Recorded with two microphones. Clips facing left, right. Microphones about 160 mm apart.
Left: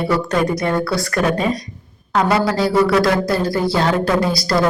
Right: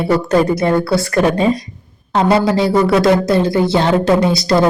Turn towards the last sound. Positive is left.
turn(degrees=-20)  # may be behind; listen again after turning